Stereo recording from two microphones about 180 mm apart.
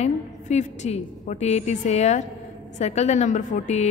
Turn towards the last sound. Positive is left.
turn(degrees=40)  # may be behind; listen again after turning